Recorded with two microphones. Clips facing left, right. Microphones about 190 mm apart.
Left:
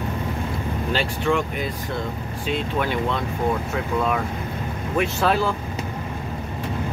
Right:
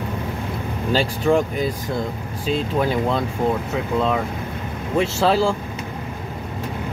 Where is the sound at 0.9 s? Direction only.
35° right (ahead or behind).